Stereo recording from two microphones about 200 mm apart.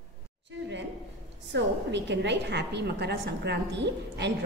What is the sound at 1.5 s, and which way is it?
A woman's voice, 60° right (ahead or behind).